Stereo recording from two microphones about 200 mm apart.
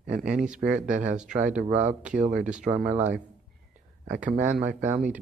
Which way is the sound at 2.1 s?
40° right (ahead or behind).